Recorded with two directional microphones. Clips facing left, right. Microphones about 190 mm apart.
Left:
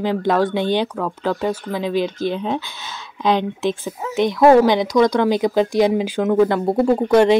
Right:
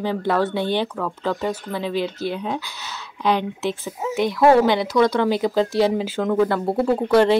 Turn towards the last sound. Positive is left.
turn(degrees=15)  # may be behind; listen again after turning